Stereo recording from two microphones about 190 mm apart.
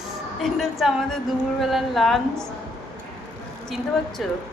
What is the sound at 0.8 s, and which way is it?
A woman's voice, centre (ahead or behind).